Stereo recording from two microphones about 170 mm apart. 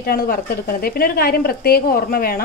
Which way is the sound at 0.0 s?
65° left (ahead or behind).